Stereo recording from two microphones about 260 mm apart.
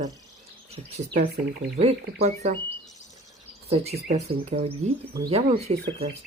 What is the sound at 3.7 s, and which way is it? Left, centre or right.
Speech, right.